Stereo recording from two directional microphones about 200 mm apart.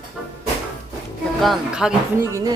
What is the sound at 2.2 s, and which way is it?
Speech, 15° right (ahead or behind).